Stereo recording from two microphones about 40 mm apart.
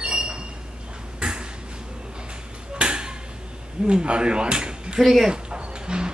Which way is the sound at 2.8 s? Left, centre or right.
Right.